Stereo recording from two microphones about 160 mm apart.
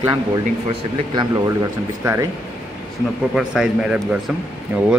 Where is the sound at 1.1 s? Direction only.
25° right (ahead or behind).